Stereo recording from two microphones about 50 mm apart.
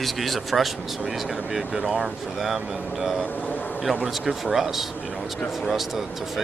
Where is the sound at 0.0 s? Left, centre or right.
Centre.